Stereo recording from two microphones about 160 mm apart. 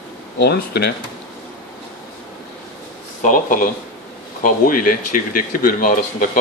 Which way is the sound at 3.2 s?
55° left (ahead or behind).